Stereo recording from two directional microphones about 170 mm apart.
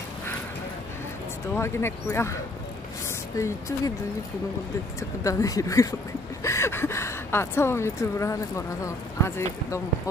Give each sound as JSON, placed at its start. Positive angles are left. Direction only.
{"t": 1.5, "sound": "speech", "side_deg": 15}
{"t": 3.3, "sound": "speech", "side_deg": 20}
{"t": 5.2, "sound": "speech", "side_deg": 20}